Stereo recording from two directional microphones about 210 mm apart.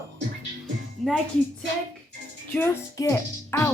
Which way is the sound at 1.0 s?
Centre (ahead or behind).